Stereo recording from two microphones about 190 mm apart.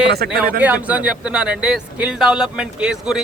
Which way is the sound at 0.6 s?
10° right (ahead or behind).